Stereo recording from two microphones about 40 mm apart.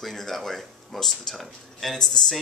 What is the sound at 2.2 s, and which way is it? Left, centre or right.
Speech, centre.